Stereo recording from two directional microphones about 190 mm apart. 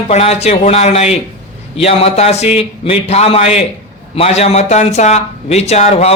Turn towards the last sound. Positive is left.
turn(degrees=35)  # may be behind; listen again after turning